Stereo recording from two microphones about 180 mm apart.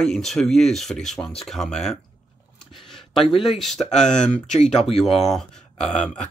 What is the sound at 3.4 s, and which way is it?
Speech, centre (ahead or behind).